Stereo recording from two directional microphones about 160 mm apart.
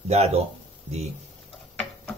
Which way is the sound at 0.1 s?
40° right (ahead or behind).